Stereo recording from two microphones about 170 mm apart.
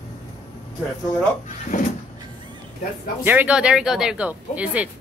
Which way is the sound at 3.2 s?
10° right (ahead or behind).